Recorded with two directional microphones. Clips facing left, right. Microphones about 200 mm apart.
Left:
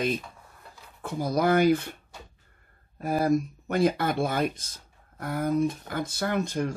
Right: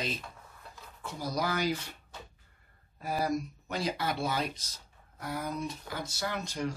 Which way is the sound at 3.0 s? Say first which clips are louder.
Left 7 dB; 50° left (ahead or behind).